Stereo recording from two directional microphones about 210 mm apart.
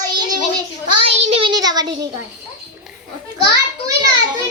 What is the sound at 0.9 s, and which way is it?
Child singing, 30° right (ahead or behind).